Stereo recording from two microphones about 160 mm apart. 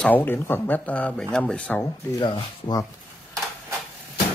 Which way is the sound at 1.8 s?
25° left (ahead or behind).